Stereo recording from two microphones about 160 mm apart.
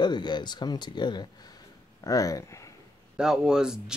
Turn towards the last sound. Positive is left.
turn(degrees=-5)  # may be behind; listen again after turning